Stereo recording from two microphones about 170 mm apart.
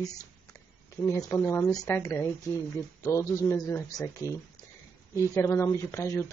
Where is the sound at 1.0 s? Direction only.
15° left (ahead or behind).